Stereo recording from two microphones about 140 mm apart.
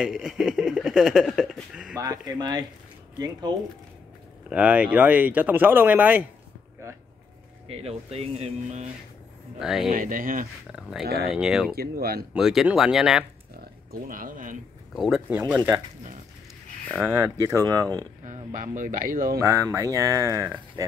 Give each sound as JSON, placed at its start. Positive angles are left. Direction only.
{"t": 0.0, "sound": "speech", "side_deg": -5}
{"t": 2.0, "sound": "speech", "side_deg": -25}
{"t": 4.5, "sound": "speech", "side_deg": -10}
{"t": 7.6, "sound": "speech", "side_deg": -45}
{"t": 9.6, "sound": "speech", "side_deg": -5}
{"t": 9.8, "sound": "speech", "side_deg": -75}
{"t": 10.7, "sound": "speech", "side_deg": -5}
{"t": 11.7, "sound": "speech", "side_deg": -90}
{"t": 12.4, "sound": "speech", "side_deg": -5}
{"t": 14.0, "sound": "speech", "side_deg": -80}
{"t": 15.0, "sound": "speech", "side_deg": -5}
{"t": 17.0, "sound": "speech", "side_deg": -20}
{"t": 18.2, "sound": "speech", "side_deg": -70}
{"t": 19.3, "sound": "speech", "side_deg": -20}